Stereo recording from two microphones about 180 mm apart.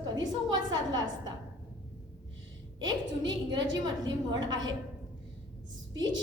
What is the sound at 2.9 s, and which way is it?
A woman's voice, 25° right (ahead or behind).